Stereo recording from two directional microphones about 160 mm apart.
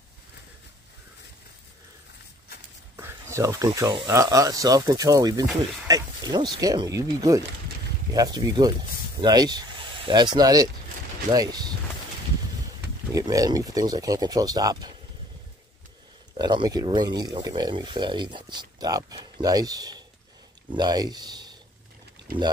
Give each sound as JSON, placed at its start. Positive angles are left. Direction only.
{"t": 3.0, "sound": "a sound", "side_deg": -15}
{"t": 4.1, "sound": "speech", "side_deg": -20}
{"t": 13.1, "sound": "speech", "side_deg": -20}
{"t": 16.3, "sound": "speech", "side_deg": -25}
{"t": 22.3, "sound": "speech", "side_deg": -65}